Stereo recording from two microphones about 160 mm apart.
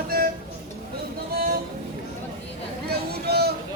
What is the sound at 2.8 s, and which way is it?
Vehicle, 85° right.